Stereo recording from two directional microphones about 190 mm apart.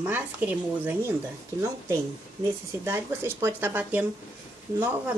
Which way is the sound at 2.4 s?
15° right (ahead or behind).